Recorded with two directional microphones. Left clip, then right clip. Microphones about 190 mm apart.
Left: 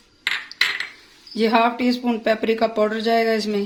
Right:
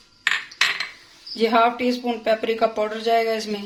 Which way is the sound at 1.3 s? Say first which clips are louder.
Even; 55° left (ahead or behind).